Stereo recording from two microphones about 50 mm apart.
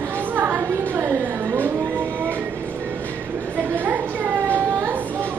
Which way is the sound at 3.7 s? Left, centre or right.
Right.